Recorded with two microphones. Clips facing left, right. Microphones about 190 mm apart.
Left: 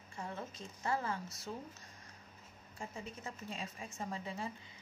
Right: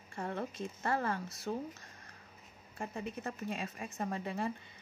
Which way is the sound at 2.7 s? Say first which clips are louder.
Right 6 dB; 60° right (ahead or behind).